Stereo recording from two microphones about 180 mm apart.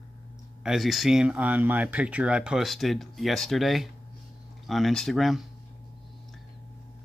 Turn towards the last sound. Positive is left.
turn(degrees=0)  # may be behind; listen again after turning